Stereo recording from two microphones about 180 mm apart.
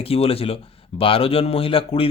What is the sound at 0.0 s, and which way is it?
Speech, 30° left (ahead or behind).